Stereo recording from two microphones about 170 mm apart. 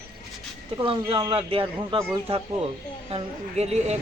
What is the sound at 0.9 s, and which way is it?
Speech, 30° right (ahead or behind).